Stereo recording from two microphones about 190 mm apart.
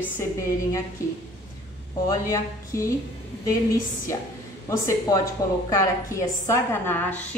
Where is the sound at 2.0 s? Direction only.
15° left (ahead or behind).